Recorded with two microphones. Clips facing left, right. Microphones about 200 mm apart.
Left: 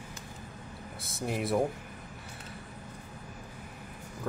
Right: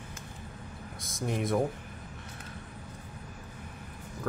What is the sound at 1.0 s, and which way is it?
Speech, 5° left (ahead or behind).